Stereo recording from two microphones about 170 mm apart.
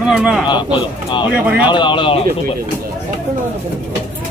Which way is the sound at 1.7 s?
30° left (ahead or behind).